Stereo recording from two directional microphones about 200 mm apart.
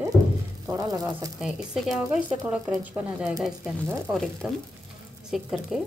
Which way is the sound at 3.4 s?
Centre (ahead or behind).